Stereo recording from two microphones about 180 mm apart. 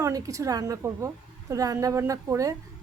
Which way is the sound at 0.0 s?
20° right (ahead or behind).